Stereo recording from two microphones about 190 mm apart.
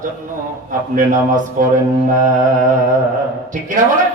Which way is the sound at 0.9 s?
45° right (ahead or behind).